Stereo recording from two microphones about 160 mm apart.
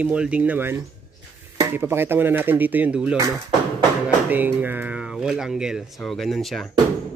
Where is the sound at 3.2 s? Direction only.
15° right (ahead or behind); by 6.7 s centre (ahead or behind).